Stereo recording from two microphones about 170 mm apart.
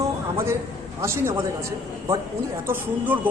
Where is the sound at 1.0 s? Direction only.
15° right (ahead or behind).